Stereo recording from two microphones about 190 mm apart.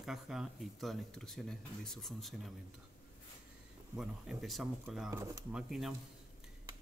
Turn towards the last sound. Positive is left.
turn(degrees=0)  # may be behind; listen again after turning